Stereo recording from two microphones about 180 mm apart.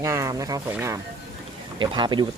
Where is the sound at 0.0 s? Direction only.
15° right (ahead or behind).